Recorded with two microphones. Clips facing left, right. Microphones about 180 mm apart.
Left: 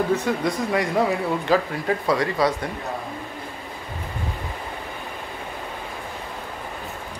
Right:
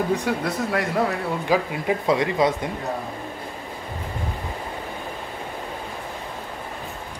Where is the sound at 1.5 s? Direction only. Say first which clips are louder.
Right 1 dB; 20° right (ahead or behind).